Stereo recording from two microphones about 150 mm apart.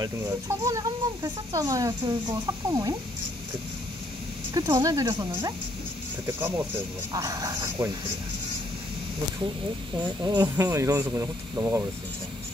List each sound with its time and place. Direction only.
0.0 s speech: 20° right (ahead or behind)
4.6 s speech: 25° right (ahead or behind)
6.2 s speech: 15° right (ahead or behind)
9.9 s speech: 25° right (ahead or behind)